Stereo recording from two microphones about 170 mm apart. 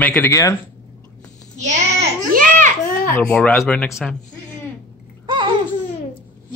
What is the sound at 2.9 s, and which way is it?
Babbling, 60° left (ahead or behind).